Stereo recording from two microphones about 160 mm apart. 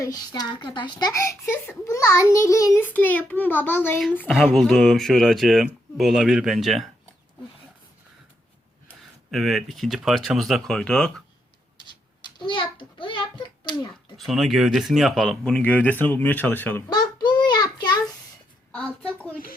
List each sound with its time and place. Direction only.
0.0 s a child's voice: 25° left (ahead or behind)
4.3 s speech: centre (ahead or behind)
9.3 s speech: centre (ahead or behind)
12.4 s a sound: 30° left (ahead or behind)
14.2 s speech: centre (ahead or behind)
16.9 s child singing: 25° left (ahead or behind)
18.7 s a sound: 5° left (ahead or behind)